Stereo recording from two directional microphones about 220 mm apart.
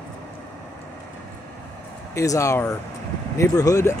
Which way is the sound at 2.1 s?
15° left (ahead or behind).